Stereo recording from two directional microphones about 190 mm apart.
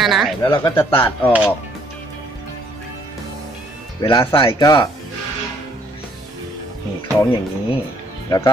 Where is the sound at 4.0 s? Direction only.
25° left (ahead or behind).